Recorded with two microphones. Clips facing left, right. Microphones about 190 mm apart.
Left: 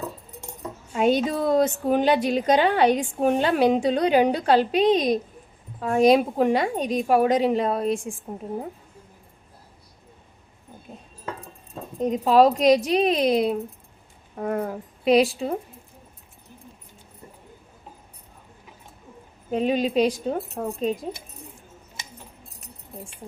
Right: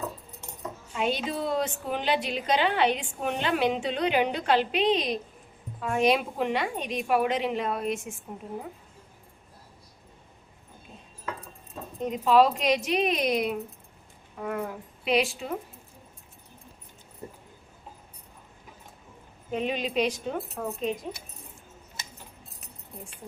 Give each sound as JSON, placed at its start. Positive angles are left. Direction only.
{"t": 0.9, "sound": "a woman's voice", "side_deg": 45}
{"t": 12.0, "sound": "a woman's voice", "side_deg": 40}
{"t": 14.3, "sound": "a woman's voice", "side_deg": 40}
{"t": 19.5, "sound": "a woman's voice", "side_deg": 40}